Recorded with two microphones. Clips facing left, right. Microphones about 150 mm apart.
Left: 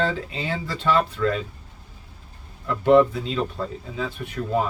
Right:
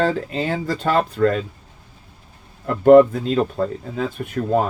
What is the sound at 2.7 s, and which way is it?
Speech, 50° right (ahead or behind).